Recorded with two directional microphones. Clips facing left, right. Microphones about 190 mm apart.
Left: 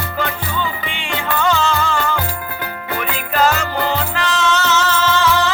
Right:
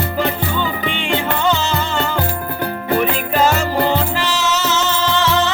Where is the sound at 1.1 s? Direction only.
25° right (ahead or behind).